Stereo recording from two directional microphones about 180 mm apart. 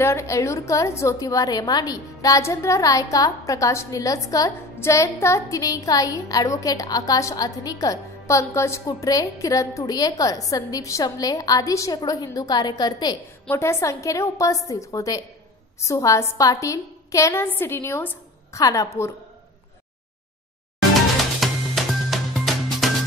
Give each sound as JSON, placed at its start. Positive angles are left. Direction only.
{"t": 0.0, "sound": "a woman's voice", "side_deg": 15}
{"t": 21.4, "sound": "music", "side_deg": 0}